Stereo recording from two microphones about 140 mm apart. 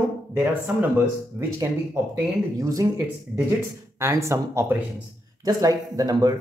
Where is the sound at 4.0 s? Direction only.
20° right (ahead or behind).